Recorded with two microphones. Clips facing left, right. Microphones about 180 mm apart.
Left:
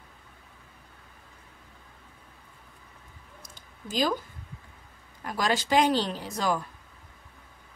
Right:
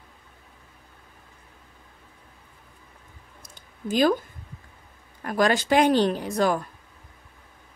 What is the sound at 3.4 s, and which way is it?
Clicking, 55° right (ahead or behind).